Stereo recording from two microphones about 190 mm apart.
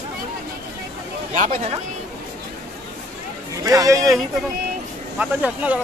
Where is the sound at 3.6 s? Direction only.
15° right (ahead or behind).